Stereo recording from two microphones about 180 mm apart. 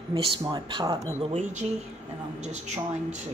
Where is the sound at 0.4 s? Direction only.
20° right (ahead or behind).